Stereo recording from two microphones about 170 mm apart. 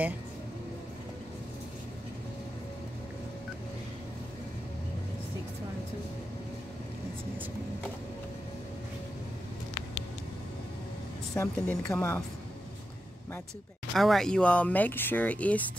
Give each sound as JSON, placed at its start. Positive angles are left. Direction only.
{"t": 11.3, "sound": "speech", "side_deg": 15}
{"t": 13.9, "sound": "speech", "side_deg": 0}